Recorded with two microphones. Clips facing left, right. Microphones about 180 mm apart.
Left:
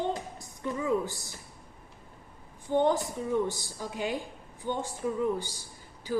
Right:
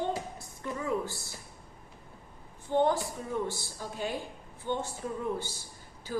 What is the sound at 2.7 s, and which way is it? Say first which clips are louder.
A woman's voice: left 1 dB; 20° left (ahead or behind).